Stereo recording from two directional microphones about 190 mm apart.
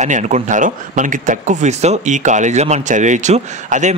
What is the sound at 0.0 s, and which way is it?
Speech, 40° right (ahead or behind).